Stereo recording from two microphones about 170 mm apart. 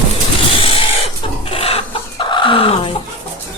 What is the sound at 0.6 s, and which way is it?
Chicken, 35° left (ahead or behind).